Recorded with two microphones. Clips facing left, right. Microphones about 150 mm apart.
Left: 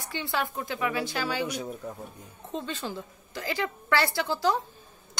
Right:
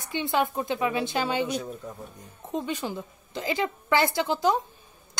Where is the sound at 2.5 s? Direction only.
15° right (ahead or behind).